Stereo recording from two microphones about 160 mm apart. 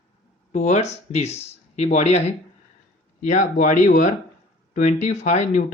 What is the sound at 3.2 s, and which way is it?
Speech, 50° left (ahead or behind).